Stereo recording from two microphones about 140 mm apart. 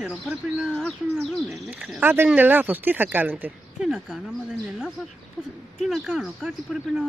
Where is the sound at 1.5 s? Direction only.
10° right (ahead or behind).